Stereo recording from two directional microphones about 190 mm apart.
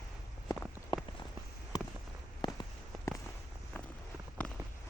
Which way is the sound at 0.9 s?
25° left (ahead or behind).